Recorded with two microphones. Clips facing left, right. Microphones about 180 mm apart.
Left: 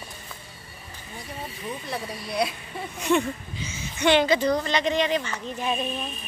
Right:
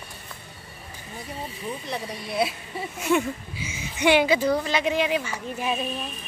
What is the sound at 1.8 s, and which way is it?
Speech, centre (ahead or behind).